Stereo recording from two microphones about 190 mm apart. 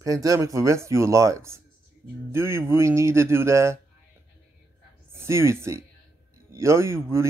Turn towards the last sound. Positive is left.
turn(degrees=-15)  # may be behind; listen again after turning